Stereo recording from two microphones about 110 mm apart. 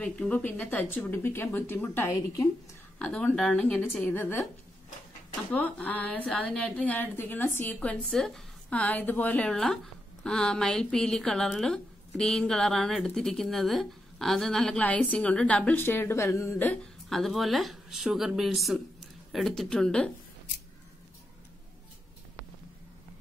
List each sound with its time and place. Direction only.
0.0 s a woman's voice: 10° left (ahead or behind)
5.5 s a woman's voice: 15° left (ahead or behind)
17.1 s speech: centre (ahead or behind)